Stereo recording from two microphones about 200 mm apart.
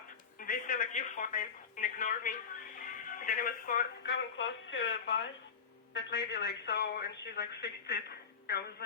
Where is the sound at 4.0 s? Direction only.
65° left (ahead or behind).